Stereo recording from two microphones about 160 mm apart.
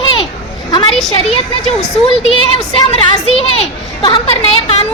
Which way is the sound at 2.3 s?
35° left (ahead or behind).